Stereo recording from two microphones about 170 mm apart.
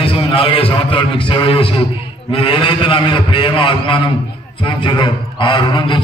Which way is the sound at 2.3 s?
30° left (ahead or behind).